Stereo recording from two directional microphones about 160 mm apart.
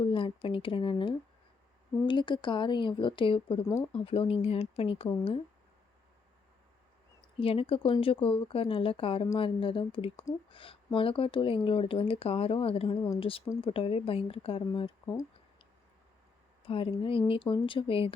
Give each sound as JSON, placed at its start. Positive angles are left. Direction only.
{"t": 0.0, "sound": "speech", "side_deg": 35}
{"t": 7.3, "sound": "speech", "side_deg": 35}
{"t": 16.6, "sound": "speech", "side_deg": 35}